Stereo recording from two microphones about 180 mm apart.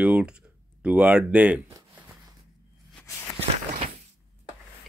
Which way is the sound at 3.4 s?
35° right (ahead or behind).